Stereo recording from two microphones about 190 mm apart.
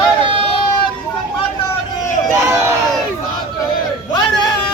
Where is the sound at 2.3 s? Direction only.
15° right (ahead or behind).